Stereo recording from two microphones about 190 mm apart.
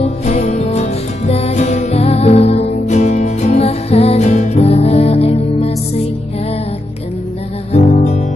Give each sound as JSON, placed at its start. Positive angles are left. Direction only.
{"t": 0.0, "sound": "music", "side_deg": 35}
{"t": 7.7, "sound": "music", "side_deg": 35}